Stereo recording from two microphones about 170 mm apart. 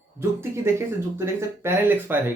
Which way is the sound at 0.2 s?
15° right (ahead or behind).